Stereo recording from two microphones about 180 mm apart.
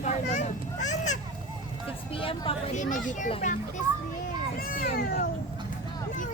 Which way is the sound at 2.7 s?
45° left (ahead or behind).